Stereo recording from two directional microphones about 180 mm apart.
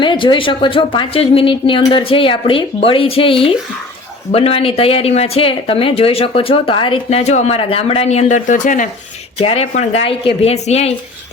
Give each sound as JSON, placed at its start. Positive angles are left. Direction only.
{"t": 0.0, "sound": "a woman's voice", "side_deg": 25}